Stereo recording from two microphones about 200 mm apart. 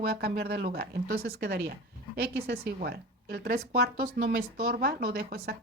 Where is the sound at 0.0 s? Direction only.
50° right (ahead or behind).